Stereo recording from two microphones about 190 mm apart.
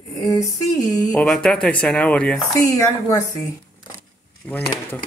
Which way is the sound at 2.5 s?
15° left (ahead or behind).